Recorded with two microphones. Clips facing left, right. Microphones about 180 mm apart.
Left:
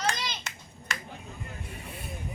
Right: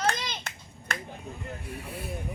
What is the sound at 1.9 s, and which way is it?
Speech, 5° right (ahead or behind).